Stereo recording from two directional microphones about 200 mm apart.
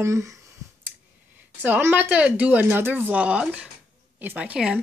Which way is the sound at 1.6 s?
10° right (ahead or behind).